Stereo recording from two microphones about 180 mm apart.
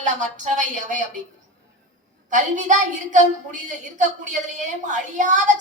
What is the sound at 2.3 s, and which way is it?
A man's voice, 45° right (ahead or behind).